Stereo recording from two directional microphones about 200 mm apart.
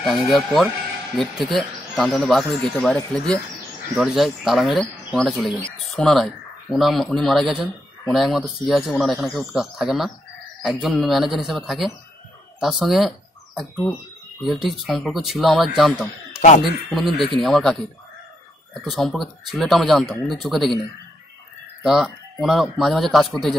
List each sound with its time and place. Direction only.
0.0 s speech: centre (ahead or behind)
14.4 s speech: centre (ahead or behind)
16.3 s speech: 35° left (ahead or behind)
16.6 s speech: centre (ahead or behind)
21.8 s speech: centre (ahead or behind)